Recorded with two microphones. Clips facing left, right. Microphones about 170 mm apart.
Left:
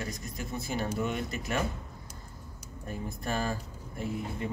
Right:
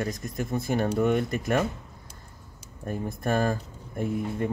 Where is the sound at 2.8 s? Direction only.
50° right (ahead or behind).